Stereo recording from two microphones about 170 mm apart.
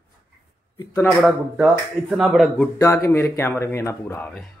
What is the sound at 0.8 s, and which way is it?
Speech, 15° left (ahead or behind).